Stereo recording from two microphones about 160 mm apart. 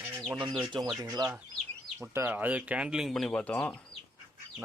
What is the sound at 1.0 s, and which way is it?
Speech, 25° right (ahead or behind).